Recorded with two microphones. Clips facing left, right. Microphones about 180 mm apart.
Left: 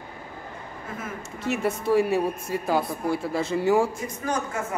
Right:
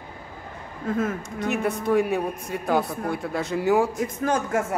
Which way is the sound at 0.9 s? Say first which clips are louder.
Right 10 dB; 70° right (ahead or behind).